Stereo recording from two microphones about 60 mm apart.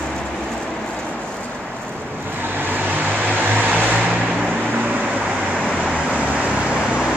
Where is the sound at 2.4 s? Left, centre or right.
Right.